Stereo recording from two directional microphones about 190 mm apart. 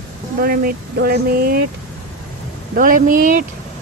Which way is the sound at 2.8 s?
45° right (ahead or behind).